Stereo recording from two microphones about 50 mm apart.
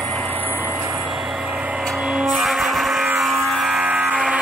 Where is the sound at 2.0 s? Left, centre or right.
Centre.